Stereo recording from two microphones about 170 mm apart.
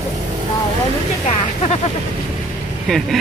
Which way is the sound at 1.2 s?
40° left (ahead or behind).